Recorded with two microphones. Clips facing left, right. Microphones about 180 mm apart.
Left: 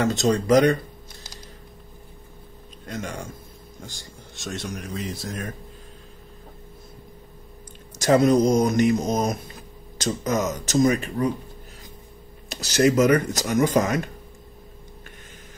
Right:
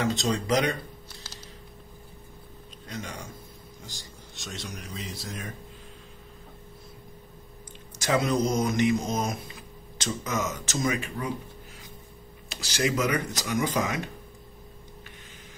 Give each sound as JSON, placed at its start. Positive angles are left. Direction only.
{"t": 0.0, "sound": "speech", "side_deg": 50}
{"t": 2.9, "sound": "speech", "side_deg": 50}
{"t": 4.4, "sound": "speech", "side_deg": 50}
{"t": 8.0, "sound": "speech", "side_deg": 45}
{"t": 12.4, "sound": "speech", "side_deg": 45}